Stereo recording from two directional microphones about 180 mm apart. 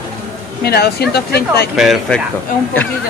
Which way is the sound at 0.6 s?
60° left (ahead or behind).